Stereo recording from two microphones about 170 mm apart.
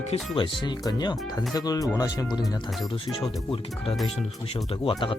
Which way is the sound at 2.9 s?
35° left (ahead or behind).